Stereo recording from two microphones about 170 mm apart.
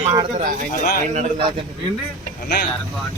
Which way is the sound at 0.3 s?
55° right (ahead or behind).